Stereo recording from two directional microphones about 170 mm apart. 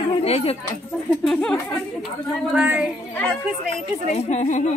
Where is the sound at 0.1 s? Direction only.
35° left (ahead or behind).